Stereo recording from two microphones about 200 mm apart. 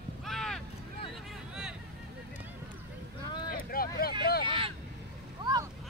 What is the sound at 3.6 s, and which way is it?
Vehicle, 45° left (ahead or behind).